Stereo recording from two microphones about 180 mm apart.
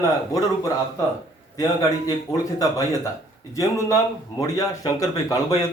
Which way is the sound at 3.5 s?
15° left (ahead or behind).